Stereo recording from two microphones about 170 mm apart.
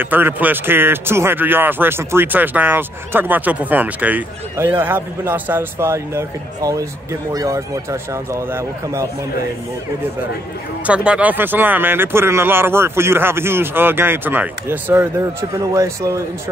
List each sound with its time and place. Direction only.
0.0 s speech: 10° right (ahead or behind)
10.9 s speech: 5° right (ahead or behind)